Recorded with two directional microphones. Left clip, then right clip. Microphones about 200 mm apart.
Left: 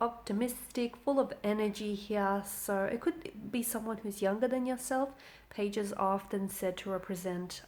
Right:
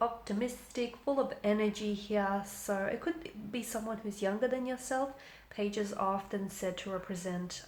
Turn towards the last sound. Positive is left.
turn(degrees=45)  # may be behind; listen again after turning